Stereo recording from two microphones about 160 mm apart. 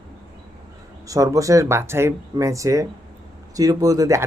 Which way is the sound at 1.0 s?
20° right (ahead or behind).